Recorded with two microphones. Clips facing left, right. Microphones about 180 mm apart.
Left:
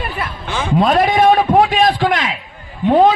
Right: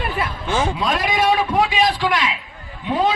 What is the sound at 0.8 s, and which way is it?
A man's voice, 55° left (ahead or behind).